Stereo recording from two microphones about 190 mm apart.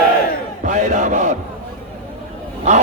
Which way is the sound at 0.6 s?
40° right (ahead or behind).